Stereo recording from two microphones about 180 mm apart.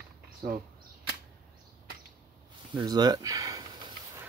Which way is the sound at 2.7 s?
25° right (ahead or behind).